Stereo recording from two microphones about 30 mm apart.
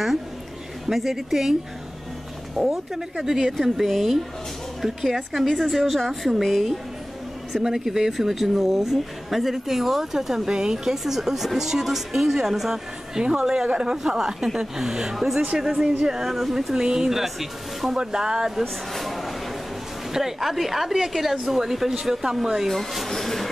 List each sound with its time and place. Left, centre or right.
0.8 s speech: centre
2.5 s speech: centre
3.8 s speech: centre
7.6 s speech: centre
15.5 s speech: right
16.3 s speech: centre
16.7 s speech: centre
17.2 s speech: centre
17.9 s speech: right
18.6 s a sound: centre
20.1 s speech: centre
22.7 s speech: centre